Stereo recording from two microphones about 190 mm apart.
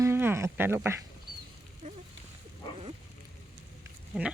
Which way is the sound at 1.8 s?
45° right (ahead or behind).